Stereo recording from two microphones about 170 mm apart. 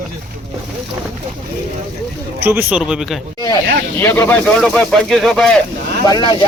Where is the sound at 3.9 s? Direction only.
15° left (ahead or behind).